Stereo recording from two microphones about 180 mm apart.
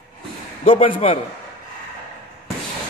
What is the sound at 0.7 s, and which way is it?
Speech, 30° left (ahead or behind).